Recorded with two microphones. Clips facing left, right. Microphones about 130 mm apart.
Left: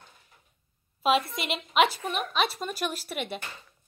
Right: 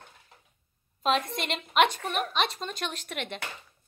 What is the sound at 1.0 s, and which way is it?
A woman's voice, 5° left (ahead or behind).